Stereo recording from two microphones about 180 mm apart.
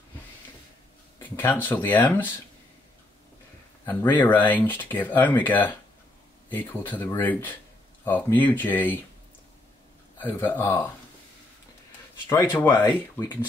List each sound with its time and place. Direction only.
1.6 s speech: 10° left (ahead or behind)
3.8 s speech: 10° left (ahead or behind)
6.5 s speech: 10° left (ahead or behind)
10.2 s speech: 10° left (ahead or behind)
12.3 s speech: 15° left (ahead or behind)